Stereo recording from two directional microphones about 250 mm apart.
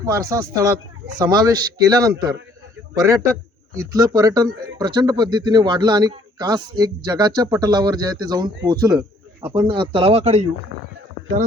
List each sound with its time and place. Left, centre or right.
0.0 s a man's voice: centre
3.8 s a man's voice: centre